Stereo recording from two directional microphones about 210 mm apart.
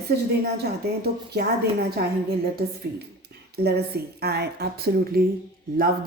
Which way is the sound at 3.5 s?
50° right (ahead or behind).